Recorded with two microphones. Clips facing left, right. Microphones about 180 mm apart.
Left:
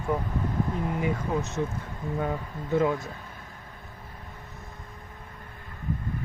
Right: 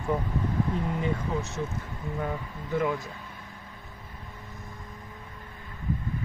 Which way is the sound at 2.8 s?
25° left (ahead or behind).